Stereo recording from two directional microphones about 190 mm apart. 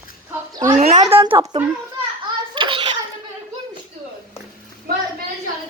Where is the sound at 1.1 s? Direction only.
30° right (ahead or behind).